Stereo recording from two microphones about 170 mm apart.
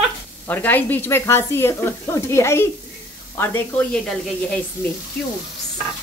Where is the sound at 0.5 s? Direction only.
10° left (ahead or behind).